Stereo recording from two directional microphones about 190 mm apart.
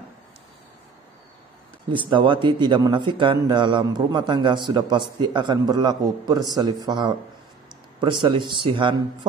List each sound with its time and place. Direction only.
1.9 s a man's voice: 25° right (ahead or behind)